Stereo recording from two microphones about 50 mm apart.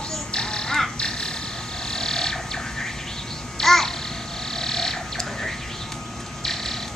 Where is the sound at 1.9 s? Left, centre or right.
Centre.